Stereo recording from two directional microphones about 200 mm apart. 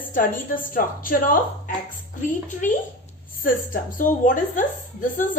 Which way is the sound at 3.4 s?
45° left (ahead or behind).